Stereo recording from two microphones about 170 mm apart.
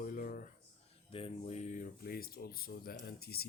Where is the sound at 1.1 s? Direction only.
35° left (ahead or behind); by 3.5 s 65° left (ahead or behind).